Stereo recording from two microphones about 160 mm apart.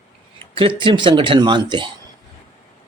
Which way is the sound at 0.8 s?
30° right (ahead or behind).